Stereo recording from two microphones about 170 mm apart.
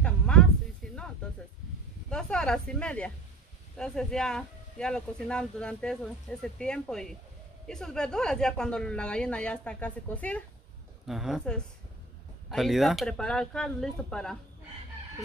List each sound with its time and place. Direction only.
0.0 s a sound: 5° left (ahead or behind)
0.8 s music: 5° left (ahead or behind)
2.0 s speech: 5° left (ahead or behind)
11.1 s speech: centre (ahead or behind)